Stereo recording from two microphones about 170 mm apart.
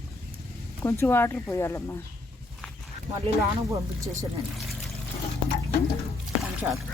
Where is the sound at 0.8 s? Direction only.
15° left (ahead or behind).